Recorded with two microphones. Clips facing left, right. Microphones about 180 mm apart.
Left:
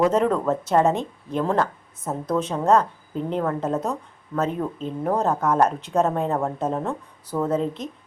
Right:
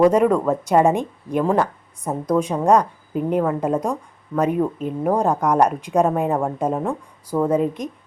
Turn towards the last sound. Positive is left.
turn(degrees=-10)  # may be behind; listen again after turning